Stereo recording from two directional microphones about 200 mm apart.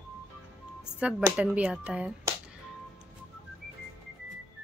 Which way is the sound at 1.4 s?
5° right (ahead or behind).